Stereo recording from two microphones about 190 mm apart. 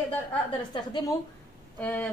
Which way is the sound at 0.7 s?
25° left (ahead or behind).